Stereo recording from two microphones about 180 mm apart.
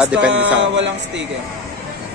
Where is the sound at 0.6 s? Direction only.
90° right.